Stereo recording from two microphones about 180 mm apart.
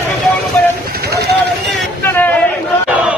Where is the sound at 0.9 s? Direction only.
60° right (ahead or behind).